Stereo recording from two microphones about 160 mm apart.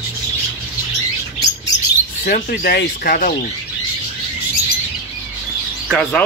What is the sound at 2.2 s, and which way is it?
Speech, 65° left (ahead or behind).